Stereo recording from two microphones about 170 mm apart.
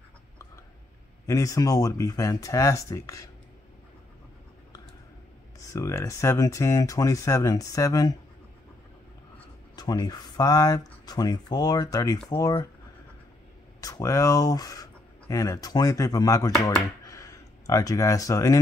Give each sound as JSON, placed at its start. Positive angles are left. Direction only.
{"t": 1.2, "sound": "speech", "side_deg": 20}
{"t": 5.7, "sound": "speech", "side_deg": 20}
{"t": 9.8, "sound": "speech", "side_deg": 25}
{"t": 13.7, "sound": "speech", "side_deg": 20}
{"t": 17.0, "sound": "a sound", "side_deg": 20}